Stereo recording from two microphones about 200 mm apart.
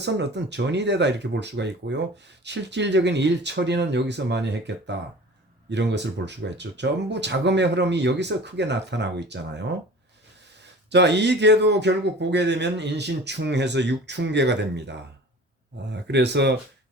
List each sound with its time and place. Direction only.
0.0 s speech: 60° right (ahead or behind)
10.8 s speech: 60° right (ahead or behind)